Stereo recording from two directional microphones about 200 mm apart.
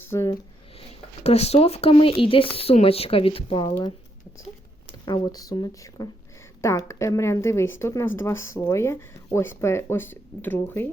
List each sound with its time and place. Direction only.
0.1 s speech: 15° left (ahead or behind)
0.8 s speech: 30° left (ahead or behind)
5.0 s speech: 20° left (ahead or behind)